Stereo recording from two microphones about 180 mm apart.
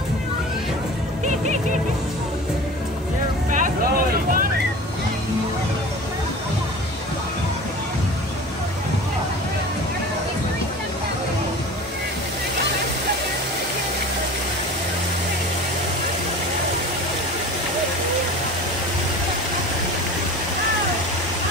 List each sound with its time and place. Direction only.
1.2 s music: 40° right (ahead or behind)
3.5 s vehicle: 50° right (ahead or behind)